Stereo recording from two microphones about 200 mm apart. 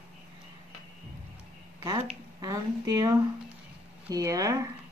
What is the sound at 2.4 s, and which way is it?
Speech, 20° right (ahead or behind).